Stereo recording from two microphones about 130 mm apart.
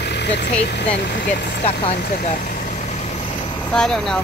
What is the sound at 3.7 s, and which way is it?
Speech, 5° left (ahead or behind).